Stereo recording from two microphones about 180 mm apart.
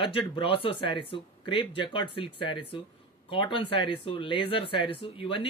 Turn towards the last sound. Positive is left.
turn(degrees=30)  # may be behind; listen again after turning